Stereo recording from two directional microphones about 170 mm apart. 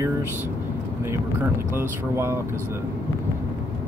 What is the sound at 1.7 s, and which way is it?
Speech, 15° right (ahead or behind).